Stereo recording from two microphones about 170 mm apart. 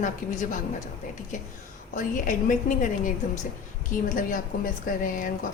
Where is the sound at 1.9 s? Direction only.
50° left (ahead or behind).